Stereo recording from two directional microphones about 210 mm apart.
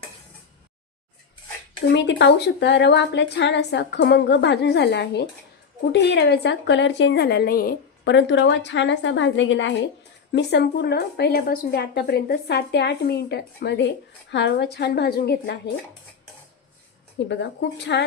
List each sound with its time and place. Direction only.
1.9 s a woman's voice: 55° left (ahead or behind)
17.2 s a woman's voice: 55° left (ahead or behind)